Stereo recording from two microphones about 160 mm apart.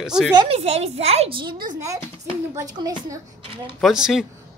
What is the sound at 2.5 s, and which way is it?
Speech, 25° right (ahead or behind).